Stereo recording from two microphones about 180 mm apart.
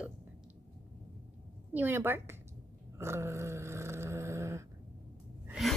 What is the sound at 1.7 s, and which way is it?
Speech, 10° right (ahead or behind).